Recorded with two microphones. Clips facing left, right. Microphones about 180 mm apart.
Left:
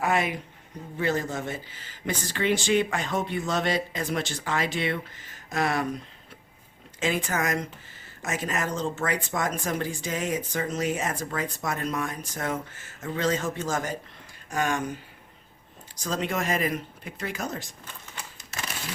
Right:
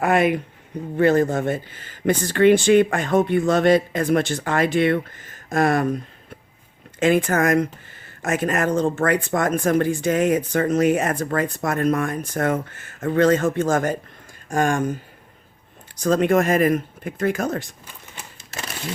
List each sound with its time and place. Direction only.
0.0 s a sound: 55° right (ahead or behind)
0.9 s speech: 55° right (ahead or behind)
7.0 s speech: 55° right (ahead or behind)
16.0 s speech: 55° right (ahead or behind)